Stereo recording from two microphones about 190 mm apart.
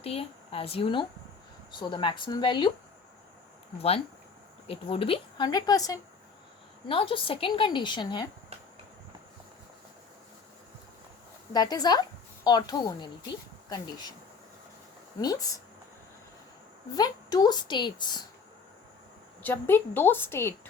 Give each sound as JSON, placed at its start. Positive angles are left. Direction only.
{"t": 0.0, "sound": "a woman's voice", "side_deg": 30}
{"t": 3.8, "sound": "a woman's voice", "side_deg": 30}
{"t": 11.5, "sound": "a woman's voice", "side_deg": 20}
{"t": 15.2, "sound": "a woman's voice", "side_deg": 20}
{"t": 16.9, "sound": "a woman's voice", "side_deg": 20}
{"t": 19.4, "sound": "a woman's voice", "side_deg": 10}